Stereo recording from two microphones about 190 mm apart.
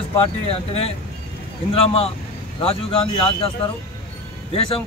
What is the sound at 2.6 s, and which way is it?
Speech, 30° left (ahead or behind).